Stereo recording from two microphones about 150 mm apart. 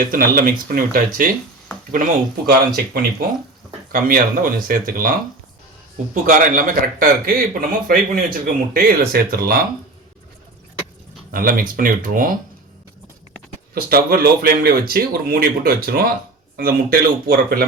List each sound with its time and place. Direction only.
0.1 s a man's voice: 75° right (ahead or behind)
2.5 s speech: 85° right
3.9 s a man's voice: 70° right (ahead or behind)
6.2 s a man's voice: 60° right (ahead or behind); by 9.6 s 85° right
11.3 s a man's voice: 75° right (ahead or behind)
13.7 s a man's voice: 80° right